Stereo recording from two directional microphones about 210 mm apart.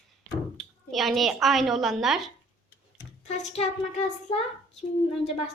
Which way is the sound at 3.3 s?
35° left (ahead or behind).